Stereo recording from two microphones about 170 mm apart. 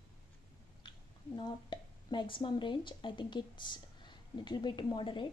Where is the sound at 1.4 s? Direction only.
25° left (ahead or behind).